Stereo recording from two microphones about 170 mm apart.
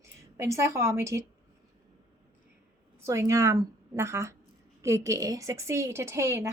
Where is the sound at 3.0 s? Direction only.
15° right (ahead or behind).